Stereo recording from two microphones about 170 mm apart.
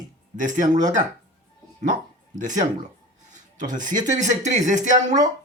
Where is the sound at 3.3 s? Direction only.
50° right (ahead or behind).